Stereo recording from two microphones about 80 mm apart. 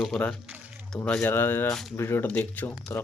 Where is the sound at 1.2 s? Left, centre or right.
Left.